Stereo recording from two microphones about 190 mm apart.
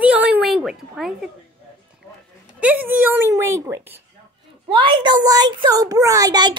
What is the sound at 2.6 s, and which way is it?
Speech, 10° right (ahead or behind).